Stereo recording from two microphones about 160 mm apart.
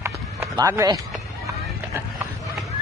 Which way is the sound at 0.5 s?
20° right (ahead or behind).